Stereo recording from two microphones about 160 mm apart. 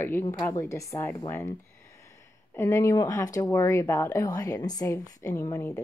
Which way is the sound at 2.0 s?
15° left (ahead or behind).